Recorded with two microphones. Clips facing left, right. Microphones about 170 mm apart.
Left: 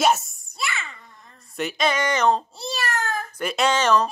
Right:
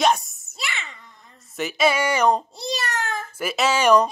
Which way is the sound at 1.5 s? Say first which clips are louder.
Right 2 dB; 5° right (ahead or behind).